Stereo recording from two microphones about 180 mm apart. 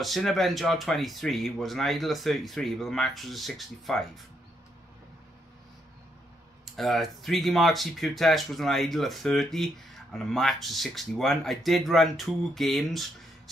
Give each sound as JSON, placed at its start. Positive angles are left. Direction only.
{"t": 0.0, "sound": "speech", "side_deg": 0}
{"t": 6.6, "sound": "speech", "side_deg": 0}